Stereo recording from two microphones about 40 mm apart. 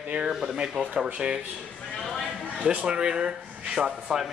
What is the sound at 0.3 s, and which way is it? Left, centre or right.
Speech, centre.